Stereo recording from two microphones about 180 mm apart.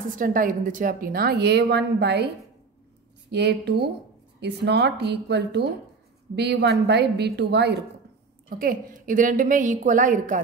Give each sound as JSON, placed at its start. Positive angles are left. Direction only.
{"t": 0.2, "sound": "a woman's voice", "side_deg": -50}
{"t": 3.3, "sound": "a woman's voice", "side_deg": -70}
{"t": 8.5, "sound": "a woman's voice", "side_deg": -50}